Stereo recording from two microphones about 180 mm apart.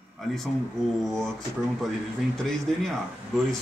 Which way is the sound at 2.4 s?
Centre (ahead or behind).